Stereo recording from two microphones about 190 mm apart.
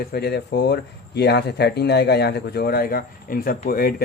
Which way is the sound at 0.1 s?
60° left (ahead or behind).